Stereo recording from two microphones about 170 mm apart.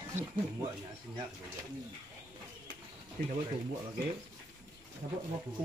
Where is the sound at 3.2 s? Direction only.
60° right (ahead or behind).